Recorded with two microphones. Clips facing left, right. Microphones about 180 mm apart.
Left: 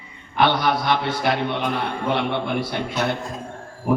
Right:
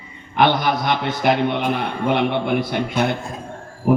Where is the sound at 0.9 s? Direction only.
55° right (ahead or behind).